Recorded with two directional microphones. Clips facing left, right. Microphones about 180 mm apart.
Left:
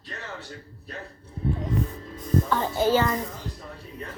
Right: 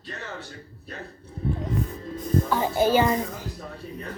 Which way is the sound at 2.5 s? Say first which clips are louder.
Right 2 dB; 10° right (ahead or behind).